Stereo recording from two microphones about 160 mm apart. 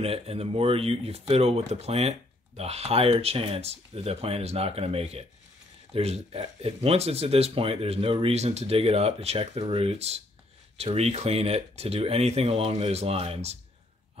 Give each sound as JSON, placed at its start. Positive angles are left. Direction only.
{"t": 0.0, "sound": "speech", "side_deg": -40}